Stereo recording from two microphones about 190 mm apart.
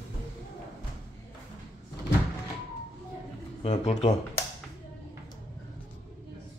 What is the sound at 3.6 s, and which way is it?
Speech, 35° left (ahead or behind).